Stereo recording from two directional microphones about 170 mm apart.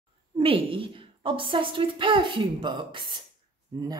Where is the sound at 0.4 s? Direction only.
30° right (ahead or behind).